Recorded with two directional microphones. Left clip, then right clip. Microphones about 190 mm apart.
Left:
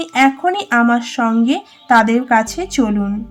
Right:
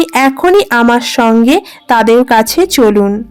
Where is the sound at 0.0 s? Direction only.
40° right (ahead or behind).